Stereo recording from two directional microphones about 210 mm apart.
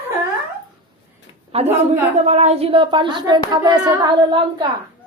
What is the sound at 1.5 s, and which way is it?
Speech, 30° right (ahead or behind).